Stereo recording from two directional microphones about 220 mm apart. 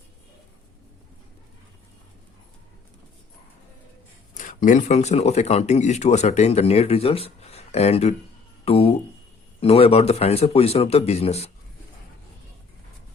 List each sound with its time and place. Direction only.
4.4 s speech: 35° left (ahead or behind)